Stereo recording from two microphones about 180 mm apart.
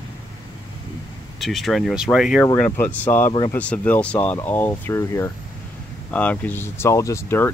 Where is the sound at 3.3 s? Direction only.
25° left (ahead or behind).